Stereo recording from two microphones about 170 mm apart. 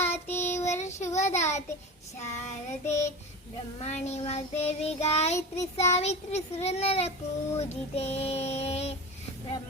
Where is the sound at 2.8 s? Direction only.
40° left (ahead or behind).